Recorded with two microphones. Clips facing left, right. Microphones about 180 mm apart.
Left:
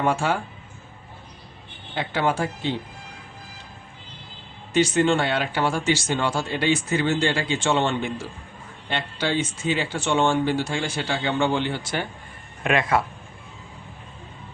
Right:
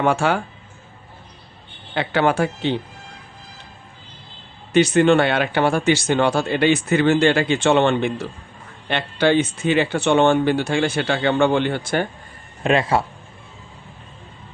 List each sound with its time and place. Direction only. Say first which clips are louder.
0.0 s speech: right 4 dB; 70° right (ahead or behind)
2.0 s speech: right 5 dB; 70° right (ahead or behind)
4.7 s speech: right 5 dB; 65° right (ahead or behind)
12.6 s speech: right 3 dB; 30° right (ahead or behind)